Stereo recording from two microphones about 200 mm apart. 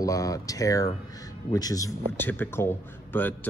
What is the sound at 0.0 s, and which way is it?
A man's voice, 15° left (ahead or behind).